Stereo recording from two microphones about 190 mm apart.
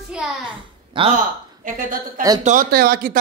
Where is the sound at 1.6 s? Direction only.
45° right (ahead or behind).